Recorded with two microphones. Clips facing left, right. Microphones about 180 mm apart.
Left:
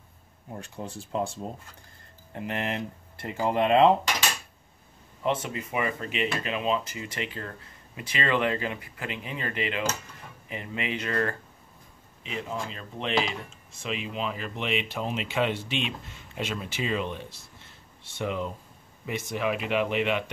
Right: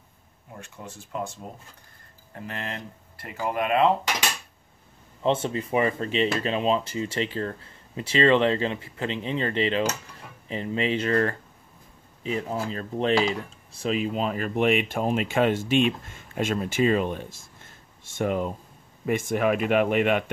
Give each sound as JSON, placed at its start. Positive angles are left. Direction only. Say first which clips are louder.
{"t": 0.6, "sound": "speech", "louder": "left 4 dB", "side_deg": 30}
{"t": 2.3, "sound": "speech", "louder": "left 4 dB", "side_deg": 20}
{"t": 5.2, "sound": "speech", "louder": "right 4 dB", "side_deg": -30}
{"t": 12.2, "sound": "speech", "louder": "right 5 dB", "side_deg": -40}